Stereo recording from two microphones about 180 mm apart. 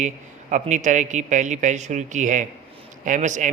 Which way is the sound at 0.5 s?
45° right (ahead or behind).